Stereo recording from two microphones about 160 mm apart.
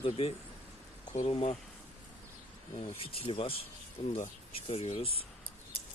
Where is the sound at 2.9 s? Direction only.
35° left (ahead or behind).